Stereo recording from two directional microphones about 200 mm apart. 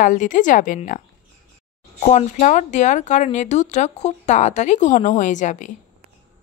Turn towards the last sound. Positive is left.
turn(degrees=40)  # may be behind; listen again after turning